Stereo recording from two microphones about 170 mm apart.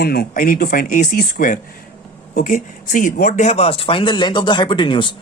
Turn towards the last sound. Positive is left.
turn(degrees=30)  # may be behind; listen again after turning